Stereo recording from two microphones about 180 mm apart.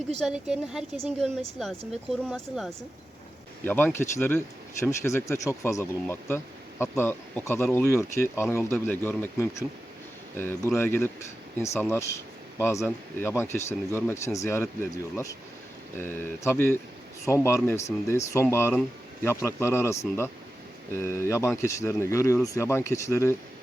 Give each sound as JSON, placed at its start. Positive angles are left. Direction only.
{"t": 0.2, "sound": "a woman's voice", "side_deg": -5}